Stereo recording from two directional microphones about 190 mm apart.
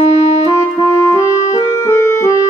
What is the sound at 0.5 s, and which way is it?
Music, 15° left (ahead or behind).